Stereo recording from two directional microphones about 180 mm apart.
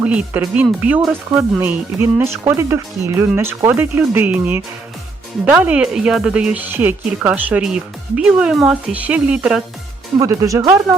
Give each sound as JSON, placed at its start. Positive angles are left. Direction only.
{"t": 0.0, "sound": "speech", "side_deg": -10}
{"t": 10.2, "sound": "speech", "side_deg": -20}